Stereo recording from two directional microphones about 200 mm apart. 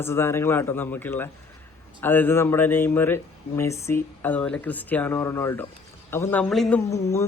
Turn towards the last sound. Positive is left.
turn(degrees=15)  # may be behind; listen again after turning